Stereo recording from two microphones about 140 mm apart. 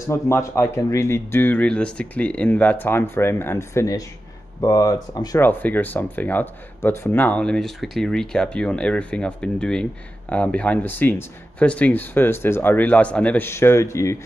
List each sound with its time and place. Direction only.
0.1 s speech: 20° left (ahead or behind)
5.4 s speech: 15° left (ahead or behind)